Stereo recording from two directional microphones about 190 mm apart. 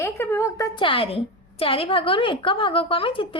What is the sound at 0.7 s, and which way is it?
A woman's voice, 30° left (ahead or behind).